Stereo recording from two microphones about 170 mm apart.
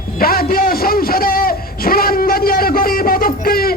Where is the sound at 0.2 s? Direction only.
60° left (ahead or behind).